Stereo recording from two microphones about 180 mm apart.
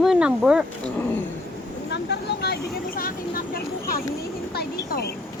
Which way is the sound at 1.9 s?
65° left (ahead or behind).